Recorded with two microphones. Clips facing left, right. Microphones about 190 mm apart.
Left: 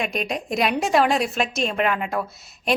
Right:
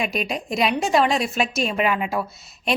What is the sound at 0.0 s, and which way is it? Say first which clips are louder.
A woman's voice: right 1 dB; 5° right (ahead or behind).